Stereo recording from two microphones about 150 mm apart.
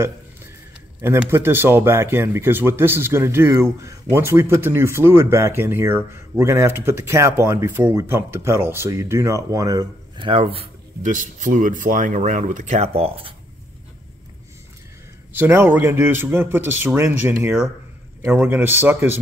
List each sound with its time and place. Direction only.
1.0 s speech: 15° right (ahead or behind); by 10.7 s 35° right (ahead or behind)
11.0 s speech: 55° right (ahead or behind); by 13.3 s 40° right (ahead or behind)
15.3 s speech: 15° right (ahead or behind)